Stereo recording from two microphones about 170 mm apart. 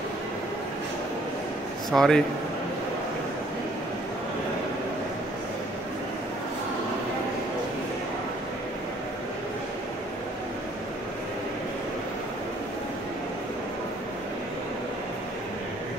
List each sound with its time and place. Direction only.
1.9 s speech: 5° left (ahead or behind)